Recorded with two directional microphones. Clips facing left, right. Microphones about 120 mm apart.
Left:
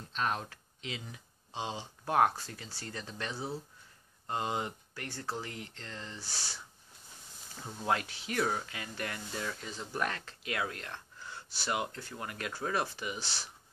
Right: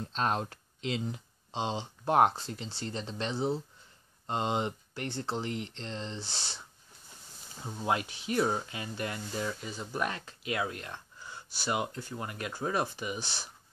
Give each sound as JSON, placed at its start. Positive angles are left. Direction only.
{"t": 0.1, "sound": "speech", "side_deg": -30}
{"t": 7.6, "sound": "speech", "side_deg": -15}